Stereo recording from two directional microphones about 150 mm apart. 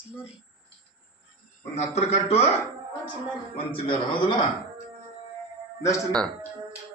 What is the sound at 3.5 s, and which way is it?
Speech, 35° left (ahead or behind).